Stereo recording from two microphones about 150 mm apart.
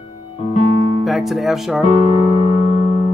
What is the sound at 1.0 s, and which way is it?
Speech, centre (ahead or behind).